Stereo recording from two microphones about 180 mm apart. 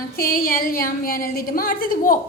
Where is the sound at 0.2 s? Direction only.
50° left (ahead or behind).